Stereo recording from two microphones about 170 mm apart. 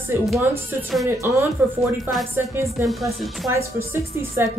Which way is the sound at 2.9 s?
Centre (ahead or behind).